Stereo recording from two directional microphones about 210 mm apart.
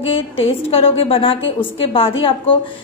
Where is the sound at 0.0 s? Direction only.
25° left (ahead or behind).